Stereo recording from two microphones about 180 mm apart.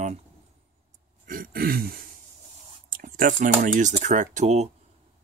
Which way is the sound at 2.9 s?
50° right (ahead or behind).